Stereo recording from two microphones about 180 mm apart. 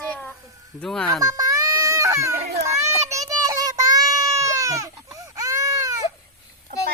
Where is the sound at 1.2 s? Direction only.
20° right (ahead or behind).